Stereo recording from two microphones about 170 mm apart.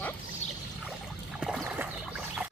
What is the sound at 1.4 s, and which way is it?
Boat, 5° right (ahead or behind).